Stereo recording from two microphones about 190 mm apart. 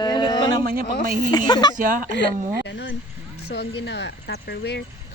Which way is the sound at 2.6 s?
70° left (ahead or behind).